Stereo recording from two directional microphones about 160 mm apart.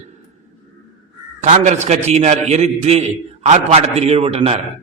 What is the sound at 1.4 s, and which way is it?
A man's voice, 50° right (ahead or behind).